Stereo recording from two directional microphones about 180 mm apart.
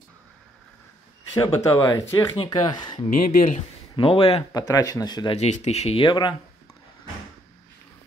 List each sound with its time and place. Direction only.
1.3 s speech: 20° left (ahead or behind)
3.2 s speech: 45° left (ahead or behind)
3.9 s speech: 30° left (ahead or behind)
4.5 s speech: 20° left (ahead or behind)
5.4 s speech: 40° left (ahead or behind)